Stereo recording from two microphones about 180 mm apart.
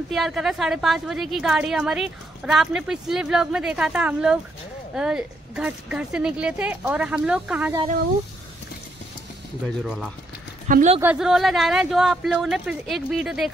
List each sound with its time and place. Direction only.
0.1 s a woman's voice: centre (ahead or behind)
9.8 s a woman's voice: centre (ahead or behind)
10.7 s speech: 45° right (ahead or behind)
11.0 s a woman's voice: 5° right (ahead or behind)